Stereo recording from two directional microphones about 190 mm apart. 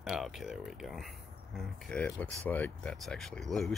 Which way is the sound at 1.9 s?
5° left (ahead or behind).